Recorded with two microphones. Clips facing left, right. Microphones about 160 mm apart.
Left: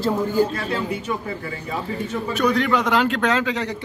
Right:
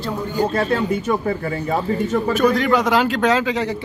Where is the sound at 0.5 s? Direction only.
50° right (ahead or behind).